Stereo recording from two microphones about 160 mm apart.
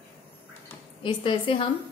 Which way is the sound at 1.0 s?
30° left (ahead or behind).